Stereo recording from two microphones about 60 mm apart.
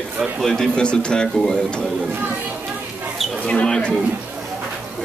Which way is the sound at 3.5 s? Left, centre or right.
Centre.